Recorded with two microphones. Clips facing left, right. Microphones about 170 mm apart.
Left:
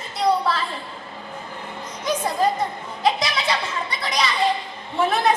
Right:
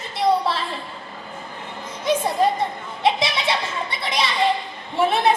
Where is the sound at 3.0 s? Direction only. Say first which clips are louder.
Right 1 dB; 25° right (ahead or behind).